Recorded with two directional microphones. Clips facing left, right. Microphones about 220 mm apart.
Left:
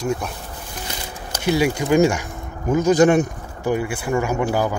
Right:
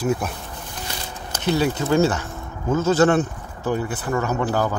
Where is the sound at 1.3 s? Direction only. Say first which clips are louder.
Left 2 dB; 10° left (ahead or behind).